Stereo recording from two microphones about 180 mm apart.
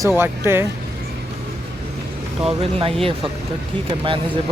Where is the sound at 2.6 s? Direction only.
30° right (ahead or behind).